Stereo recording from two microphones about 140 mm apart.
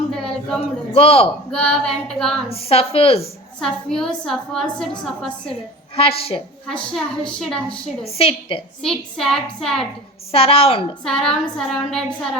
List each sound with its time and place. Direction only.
0.1 s a sound: 5° left (ahead or behind)
0.9 s a woman's voice: 45° left (ahead or behind)
1.5 s a woman's voice: 5° left (ahead or behind)
2.5 s a woman's voice: 45° left (ahead or behind)
3.6 s a woman's voice: 5° left (ahead or behind)
6.0 s a woman's voice: 45° left (ahead or behind)
6.7 s a woman's voice: 5° left (ahead or behind)
8.0 s a woman's voice: 45° left (ahead or behind)
8.8 s a woman's voice: 5° left (ahead or behind)
10.3 s a woman's voice: 40° left (ahead or behind)
11.0 s a woman's voice: 5° left (ahead or behind)